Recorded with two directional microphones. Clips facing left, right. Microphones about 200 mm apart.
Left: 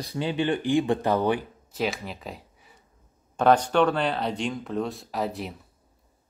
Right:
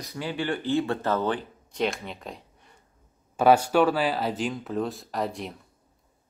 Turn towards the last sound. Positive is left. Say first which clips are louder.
# left 1 dB
turn(degrees=0)  # may be behind; listen again after turning